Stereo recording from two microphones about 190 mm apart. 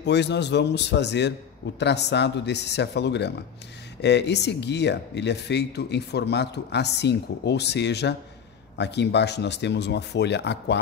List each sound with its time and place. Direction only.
0.0 s speech: 65° left (ahead or behind)